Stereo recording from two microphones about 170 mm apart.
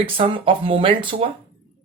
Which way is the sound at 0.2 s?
30° right (ahead or behind).